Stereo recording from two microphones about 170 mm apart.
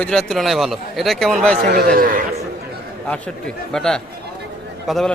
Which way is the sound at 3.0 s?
5° left (ahead or behind).